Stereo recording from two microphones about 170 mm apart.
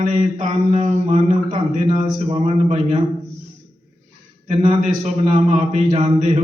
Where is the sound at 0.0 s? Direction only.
50° right (ahead or behind).